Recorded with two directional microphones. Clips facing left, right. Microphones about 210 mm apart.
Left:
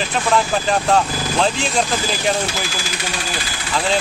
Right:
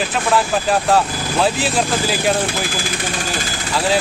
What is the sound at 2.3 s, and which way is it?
Speech, 55° right (ahead or behind).